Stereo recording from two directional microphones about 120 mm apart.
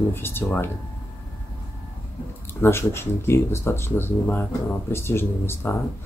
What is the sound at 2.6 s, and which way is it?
Speech, 20° left (ahead or behind).